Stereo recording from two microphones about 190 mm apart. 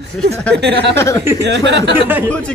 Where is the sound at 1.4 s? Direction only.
65° right (ahead or behind).